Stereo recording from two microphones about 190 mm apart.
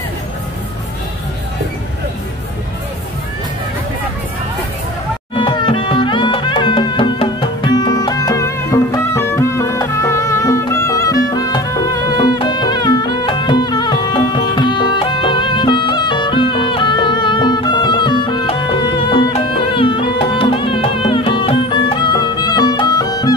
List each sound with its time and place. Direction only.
5.3 s music: 25° left (ahead or behind)